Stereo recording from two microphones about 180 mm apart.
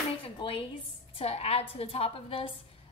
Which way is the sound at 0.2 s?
30° left (ahead or behind).